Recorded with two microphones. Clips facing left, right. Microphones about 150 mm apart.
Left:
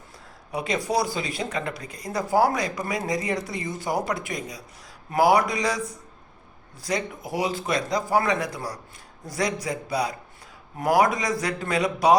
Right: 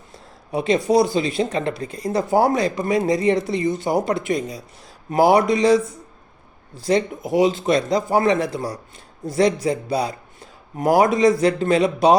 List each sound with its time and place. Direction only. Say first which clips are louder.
0.5 s speech: right 8 dB; 25° right (ahead or behind)